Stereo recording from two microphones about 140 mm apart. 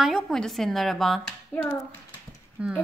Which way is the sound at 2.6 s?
10° right (ahead or behind).